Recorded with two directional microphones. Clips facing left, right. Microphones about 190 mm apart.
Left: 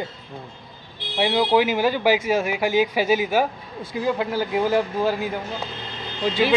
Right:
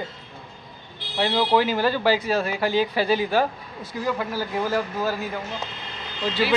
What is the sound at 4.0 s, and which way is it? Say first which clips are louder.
A man's voice: left 3 dB; 20° left (ahead or behind).